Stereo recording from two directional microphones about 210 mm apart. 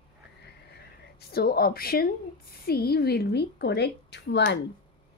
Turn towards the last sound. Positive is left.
turn(degrees=55)  # may be behind; listen again after turning